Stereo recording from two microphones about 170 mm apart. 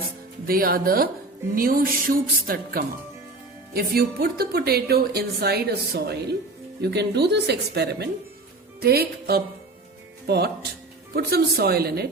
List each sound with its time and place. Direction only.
0.4 s speech: 60° right (ahead or behind)